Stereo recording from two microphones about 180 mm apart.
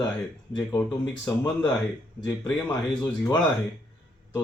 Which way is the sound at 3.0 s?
20° left (ahead or behind).